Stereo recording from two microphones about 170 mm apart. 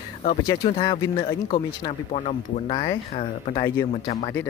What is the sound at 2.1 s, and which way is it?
Speech, 40° left (ahead or behind).